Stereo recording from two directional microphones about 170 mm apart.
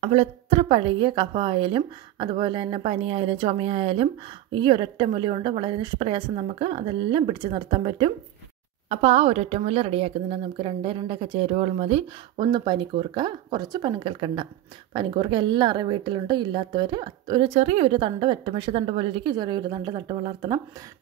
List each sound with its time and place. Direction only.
0.0 s a woman's voice: 40° right (ahead or behind)
12.4 s a woman's voice: 25° right (ahead or behind)